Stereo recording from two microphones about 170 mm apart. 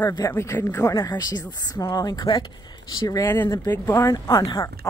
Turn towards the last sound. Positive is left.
turn(degrees=20)  # may be behind; listen again after turning